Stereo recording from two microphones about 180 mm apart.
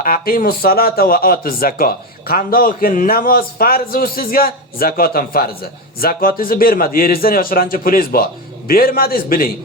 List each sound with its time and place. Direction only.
0.0 s speech: 50° left (ahead or behind)